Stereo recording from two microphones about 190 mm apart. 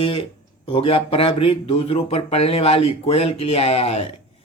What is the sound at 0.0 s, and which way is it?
Speech, 25° left (ahead or behind).